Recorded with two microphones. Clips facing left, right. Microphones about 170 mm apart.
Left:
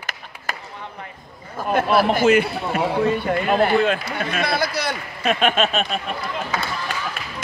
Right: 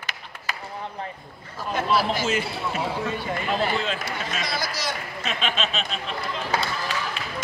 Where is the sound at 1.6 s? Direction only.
55° left (ahead or behind).